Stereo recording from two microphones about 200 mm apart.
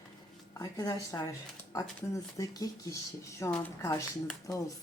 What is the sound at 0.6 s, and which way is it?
Speech, 15° left (ahead or behind).